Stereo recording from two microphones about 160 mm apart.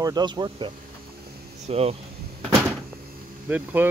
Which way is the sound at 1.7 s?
40° right (ahead or behind).